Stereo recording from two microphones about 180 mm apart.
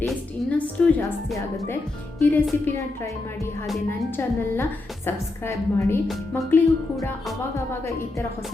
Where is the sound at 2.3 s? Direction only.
10° left (ahead or behind).